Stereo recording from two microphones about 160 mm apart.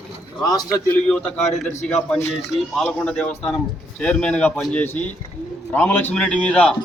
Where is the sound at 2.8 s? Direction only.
10° left (ahead or behind).